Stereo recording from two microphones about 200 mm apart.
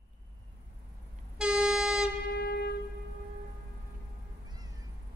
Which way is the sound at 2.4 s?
55° left (ahead or behind).